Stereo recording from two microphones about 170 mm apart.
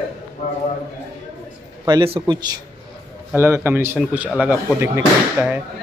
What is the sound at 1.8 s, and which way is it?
Speech, 25° right (ahead or behind).